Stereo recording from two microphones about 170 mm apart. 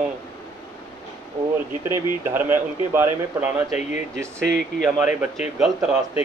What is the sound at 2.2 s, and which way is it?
Speech, 15° right (ahead or behind).